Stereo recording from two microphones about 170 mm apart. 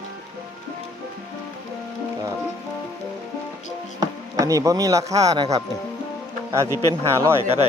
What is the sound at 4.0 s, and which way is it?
Speech, 20° right (ahead or behind).